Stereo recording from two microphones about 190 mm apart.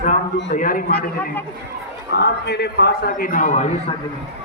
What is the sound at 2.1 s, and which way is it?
A man's voice, 60° left (ahead or behind).